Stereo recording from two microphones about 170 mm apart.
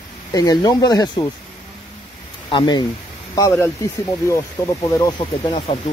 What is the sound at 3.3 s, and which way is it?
Speech, 15° left (ahead or behind).